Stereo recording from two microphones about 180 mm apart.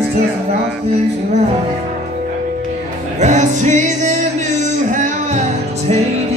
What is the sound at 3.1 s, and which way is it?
Music, 40° right (ahead or behind).